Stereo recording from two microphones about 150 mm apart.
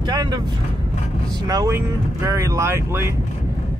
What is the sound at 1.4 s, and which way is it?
Speech, 25° right (ahead or behind).